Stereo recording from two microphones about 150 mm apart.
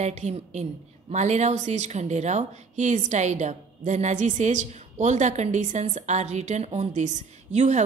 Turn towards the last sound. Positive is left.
turn(degrees=-50)  # may be behind; listen again after turning